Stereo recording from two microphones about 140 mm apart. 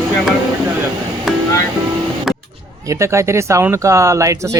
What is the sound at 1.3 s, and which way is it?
Music, centre (ahead or behind).